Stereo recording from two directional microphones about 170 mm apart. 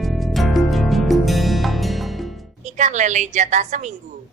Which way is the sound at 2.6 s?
45° right (ahead or behind).